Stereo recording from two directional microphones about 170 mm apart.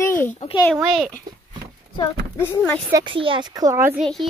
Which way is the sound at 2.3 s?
10° left (ahead or behind).